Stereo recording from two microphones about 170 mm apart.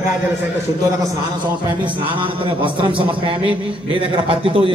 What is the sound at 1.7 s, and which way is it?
A man's voice, 30° right (ahead or behind).